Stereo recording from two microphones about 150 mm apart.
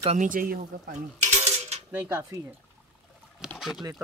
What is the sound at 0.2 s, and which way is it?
Speech, 65° right (ahead or behind).